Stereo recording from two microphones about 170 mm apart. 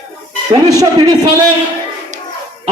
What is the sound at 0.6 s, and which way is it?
Speech, 20° right (ahead or behind).